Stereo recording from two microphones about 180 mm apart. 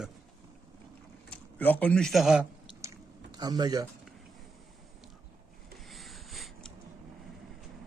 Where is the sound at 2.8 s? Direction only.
20° right (ahead or behind).